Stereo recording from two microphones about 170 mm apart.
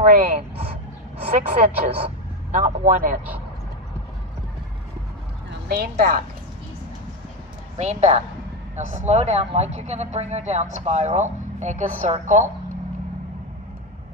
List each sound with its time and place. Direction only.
0.0 s speech: 40° right (ahead or behind)
5.5 s a woman's voice: 65° right (ahead or behind)
7.7 s speech: 40° right (ahead or behind)